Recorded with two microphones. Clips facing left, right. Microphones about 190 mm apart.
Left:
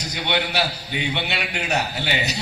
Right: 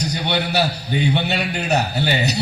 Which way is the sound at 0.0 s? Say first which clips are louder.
Right 3 dB; 40° right (ahead or behind).